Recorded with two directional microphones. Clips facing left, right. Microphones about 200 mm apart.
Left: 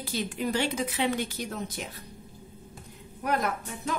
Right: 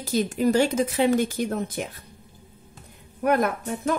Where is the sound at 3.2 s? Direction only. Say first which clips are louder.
Right 7 dB; 55° right (ahead or behind).